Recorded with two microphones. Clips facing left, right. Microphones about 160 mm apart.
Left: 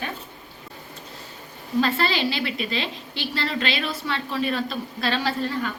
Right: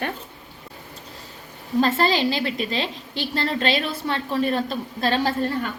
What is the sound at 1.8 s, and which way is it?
A woman's voice, 45° right (ahead or behind).